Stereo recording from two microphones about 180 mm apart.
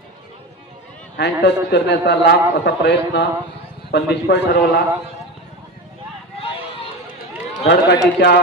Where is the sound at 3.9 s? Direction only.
70° left (ahead or behind).